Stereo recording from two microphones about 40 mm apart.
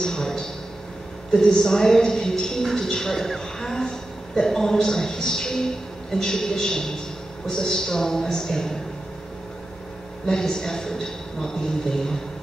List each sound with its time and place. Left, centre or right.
0.0 s a man's voice: centre
10.2 s a woman's voice: centre